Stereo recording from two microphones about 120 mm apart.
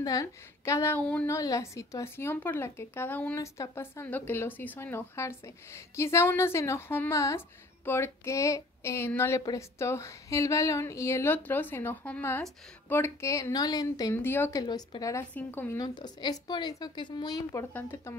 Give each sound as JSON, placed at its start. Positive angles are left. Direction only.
{"t": 0.0, "sound": "speech", "side_deg": 30}
{"t": 0.9, "sound": "a woman's voice", "side_deg": 10}
{"t": 1.2, "sound": "speech", "side_deg": 25}
{"t": 3.3, "sound": "speech", "side_deg": 25}
{"t": 14.1, "sound": "a woman's voice", "side_deg": 15}
{"t": 14.5, "sound": "speech", "side_deg": 35}
{"t": 15.3, "sound": "a woman's voice", "side_deg": 15}
{"t": 15.8, "sound": "a woman's voice", "side_deg": 35}